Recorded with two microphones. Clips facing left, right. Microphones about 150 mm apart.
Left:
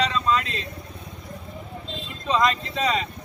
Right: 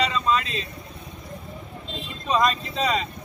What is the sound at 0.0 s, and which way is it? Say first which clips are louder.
Vehicle: even; 10° right (ahead or behind).